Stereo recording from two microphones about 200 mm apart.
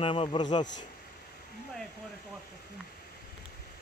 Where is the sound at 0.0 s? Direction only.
25° left (ahead or behind).